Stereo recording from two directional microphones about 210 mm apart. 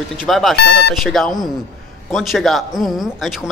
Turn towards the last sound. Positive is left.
turn(degrees=0)  # may be behind; listen again after turning